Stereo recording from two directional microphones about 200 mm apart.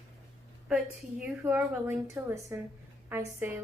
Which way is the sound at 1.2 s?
5° right (ahead or behind).